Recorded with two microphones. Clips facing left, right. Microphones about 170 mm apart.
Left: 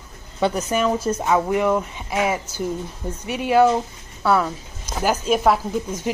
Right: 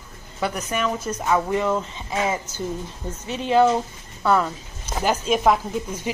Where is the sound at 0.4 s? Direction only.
25° left (ahead or behind).